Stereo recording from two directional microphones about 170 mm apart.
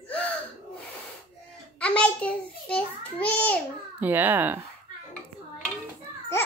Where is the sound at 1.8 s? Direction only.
10° left (ahead or behind).